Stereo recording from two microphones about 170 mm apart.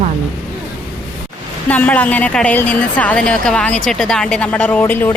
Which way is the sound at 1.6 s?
10° left (ahead or behind).